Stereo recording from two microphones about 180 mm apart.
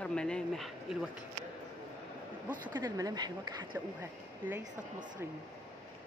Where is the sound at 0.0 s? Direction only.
5° left (ahead or behind).